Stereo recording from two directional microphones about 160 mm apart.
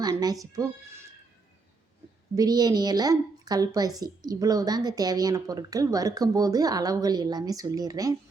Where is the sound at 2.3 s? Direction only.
25° right (ahead or behind).